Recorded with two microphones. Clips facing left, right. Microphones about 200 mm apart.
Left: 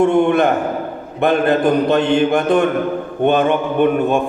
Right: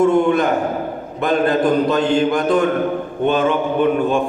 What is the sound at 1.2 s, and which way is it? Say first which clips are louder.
Mantra: left 2 dB; 65° left (ahead or behind).